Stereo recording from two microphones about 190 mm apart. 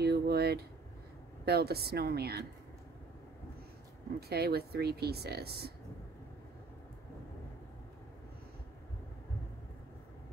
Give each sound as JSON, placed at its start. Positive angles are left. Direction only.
{"t": 0.0, "sound": "a sound", "side_deg": -55}
{"t": 1.4, "sound": "speech", "side_deg": -55}
{"t": 4.3, "sound": "speech", "side_deg": -55}